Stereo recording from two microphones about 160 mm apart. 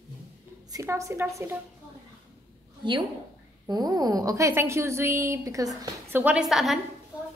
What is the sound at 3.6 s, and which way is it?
A woman's voice, 25° right (ahead or behind).